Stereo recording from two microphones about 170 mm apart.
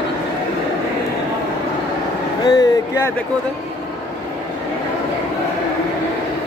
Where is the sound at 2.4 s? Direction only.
25° left (ahead or behind).